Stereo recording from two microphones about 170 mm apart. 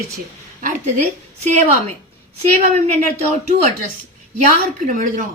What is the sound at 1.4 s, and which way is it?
A woman's voice, 40° right (ahead or behind).